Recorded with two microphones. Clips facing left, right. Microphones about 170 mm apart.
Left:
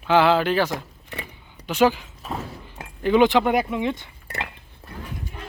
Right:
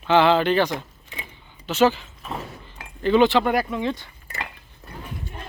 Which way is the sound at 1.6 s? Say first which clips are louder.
Even; 10° left (ahead or behind).